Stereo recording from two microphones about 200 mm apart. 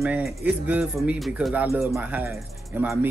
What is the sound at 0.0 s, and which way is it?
Speech, 5° right (ahead or behind).